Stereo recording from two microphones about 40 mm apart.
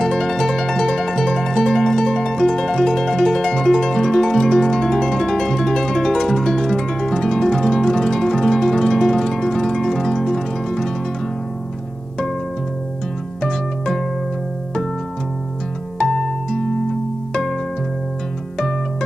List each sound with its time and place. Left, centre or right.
0.0 s harp: centre
13.4 s harp: centre
16.0 s music: centre